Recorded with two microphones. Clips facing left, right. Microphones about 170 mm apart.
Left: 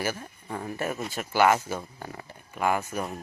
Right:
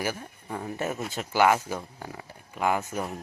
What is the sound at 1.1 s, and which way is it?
Speech, 20° right (ahead or behind).